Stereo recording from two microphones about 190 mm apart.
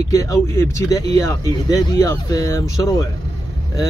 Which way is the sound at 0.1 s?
15° left (ahead or behind).